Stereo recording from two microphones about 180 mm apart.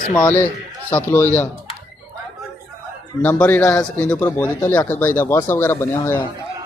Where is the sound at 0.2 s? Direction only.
10° left (ahead or behind).